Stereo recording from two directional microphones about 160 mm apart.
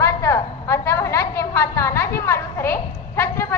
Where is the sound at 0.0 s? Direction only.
20° left (ahead or behind).